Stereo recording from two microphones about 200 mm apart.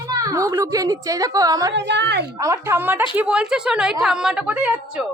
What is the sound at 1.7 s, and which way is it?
Speech, 60° right (ahead or behind).